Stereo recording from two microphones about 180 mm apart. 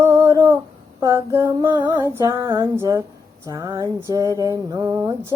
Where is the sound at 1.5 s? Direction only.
25° right (ahead or behind).